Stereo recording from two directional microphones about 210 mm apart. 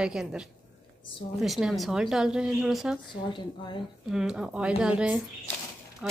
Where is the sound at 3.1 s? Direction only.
20° left (ahead or behind).